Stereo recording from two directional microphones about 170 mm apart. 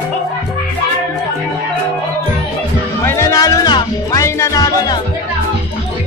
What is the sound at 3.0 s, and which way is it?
Music, 15° left (ahead or behind).